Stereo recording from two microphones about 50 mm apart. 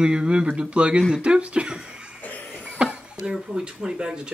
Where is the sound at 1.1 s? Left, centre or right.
Right.